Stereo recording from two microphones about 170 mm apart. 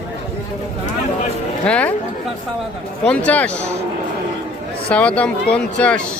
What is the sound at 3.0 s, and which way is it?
Speech, 10° left (ahead or behind).